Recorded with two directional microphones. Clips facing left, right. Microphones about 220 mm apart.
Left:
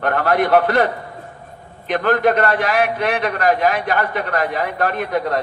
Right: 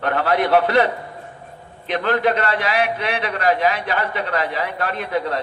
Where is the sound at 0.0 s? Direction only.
50° left (ahead or behind).